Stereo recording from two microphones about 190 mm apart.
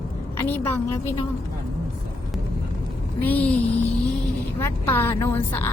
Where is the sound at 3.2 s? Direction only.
10° left (ahead or behind).